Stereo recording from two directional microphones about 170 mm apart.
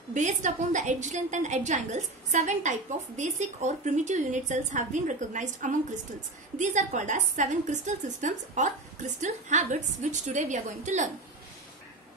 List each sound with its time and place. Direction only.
0.1 s a woman's voice: 45° right (ahead or behind)